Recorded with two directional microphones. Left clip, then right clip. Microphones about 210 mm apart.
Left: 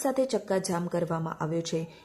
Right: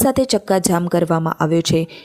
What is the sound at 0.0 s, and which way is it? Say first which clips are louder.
A woman's voice: right 11 dB; 40° right (ahead or behind).